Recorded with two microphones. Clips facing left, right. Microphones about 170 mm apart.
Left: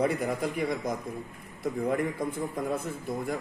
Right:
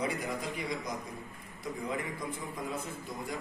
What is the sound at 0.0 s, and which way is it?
A man's voice, 55° left (ahead or behind).